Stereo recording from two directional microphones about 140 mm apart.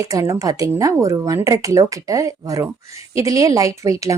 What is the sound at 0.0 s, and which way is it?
Speech, 25° right (ahead or behind).